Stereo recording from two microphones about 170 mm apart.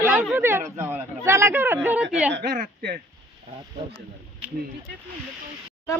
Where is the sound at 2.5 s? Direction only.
60° right (ahead or behind).